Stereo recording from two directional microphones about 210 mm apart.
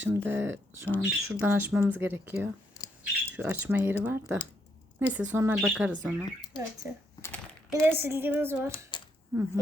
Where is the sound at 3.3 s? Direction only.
10° right (ahead or behind).